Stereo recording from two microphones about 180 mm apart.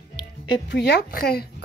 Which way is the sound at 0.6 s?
65° left (ahead or behind).